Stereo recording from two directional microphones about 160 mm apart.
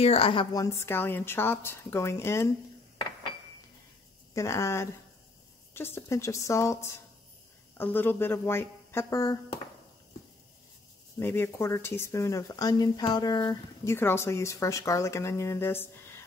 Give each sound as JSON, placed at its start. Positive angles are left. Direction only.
{"t": 0.0, "sound": "speech", "side_deg": 35}
{"t": 4.3, "sound": "speech", "side_deg": 20}
{"t": 11.1, "sound": "speech", "side_deg": 15}